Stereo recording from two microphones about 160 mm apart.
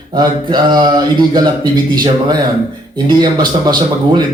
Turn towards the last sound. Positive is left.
turn(degrees=-25)  # may be behind; listen again after turning